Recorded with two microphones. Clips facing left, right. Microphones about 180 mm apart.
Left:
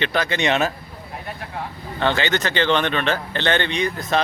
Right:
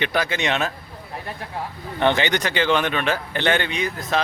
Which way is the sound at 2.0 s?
15° right (ahead or behind).